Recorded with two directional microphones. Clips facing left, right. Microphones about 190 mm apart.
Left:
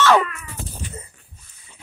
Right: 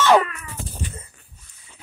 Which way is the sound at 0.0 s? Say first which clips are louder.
Even; 15° right (ahead or behind).